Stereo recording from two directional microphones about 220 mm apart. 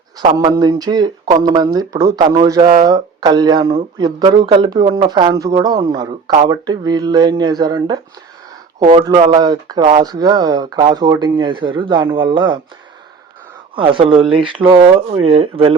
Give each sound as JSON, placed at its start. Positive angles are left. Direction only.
{"t": 0.3, "sound": "speech", "side_deg": -15}
{"t": 13.7, "sound": "speech", "side_deg": -25}